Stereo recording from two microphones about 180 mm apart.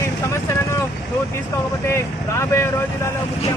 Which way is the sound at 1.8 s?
15° left (ahead or behind).